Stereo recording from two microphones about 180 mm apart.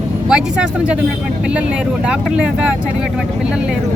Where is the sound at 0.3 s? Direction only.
5° right (ahead or behind).